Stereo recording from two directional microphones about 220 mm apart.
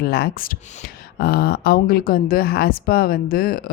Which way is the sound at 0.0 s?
45° left (ahead or behind).